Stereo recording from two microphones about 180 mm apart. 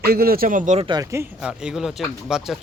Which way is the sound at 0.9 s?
20° right (ahead or behind).